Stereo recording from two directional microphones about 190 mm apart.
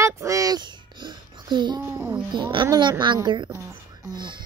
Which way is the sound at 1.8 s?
15° right (ahead or behind).